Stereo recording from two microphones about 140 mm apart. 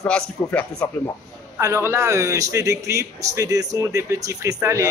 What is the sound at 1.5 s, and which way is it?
A man's voice, 20° right (ahead or behind).